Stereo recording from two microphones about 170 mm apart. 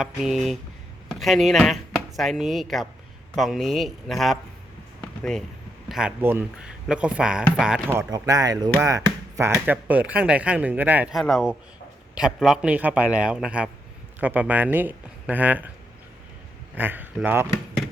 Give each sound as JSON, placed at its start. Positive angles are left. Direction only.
{"t": 0.0, "sound": "speech", "side_deg": 0}
{"t": 5.9, "sound": "speech", "side_deg": -5}
{"t": 7.9, "sound": "speech", "side_deg": -20}
{"t": 16.7, "sound": "speech", "side_deg": -10}